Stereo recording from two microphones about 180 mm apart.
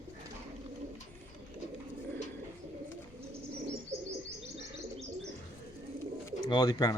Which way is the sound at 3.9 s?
35° right (ahead or behind).